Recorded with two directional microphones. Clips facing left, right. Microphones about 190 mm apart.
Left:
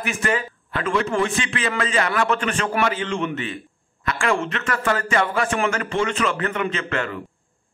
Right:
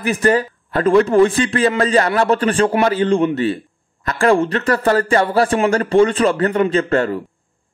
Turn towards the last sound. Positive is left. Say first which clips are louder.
# right 10 dB
turn(degrees=-35)  # may be behind; listen again after turning